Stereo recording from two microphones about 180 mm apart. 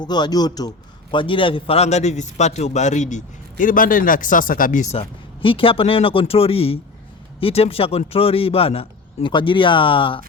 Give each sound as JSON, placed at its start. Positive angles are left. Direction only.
{"t": 0.0, "sound": "a man's voice", "side_deg": 25}